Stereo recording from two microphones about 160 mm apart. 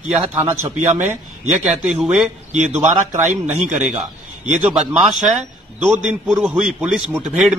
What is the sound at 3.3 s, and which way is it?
Speech, 50° right (ahead or behind).